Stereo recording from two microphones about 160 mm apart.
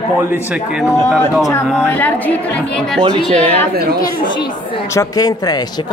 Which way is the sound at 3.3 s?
50° right (ahead or behind).